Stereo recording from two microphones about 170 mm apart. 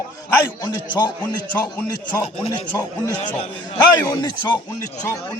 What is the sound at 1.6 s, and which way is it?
A man's voice, 15° left (ahead or behind).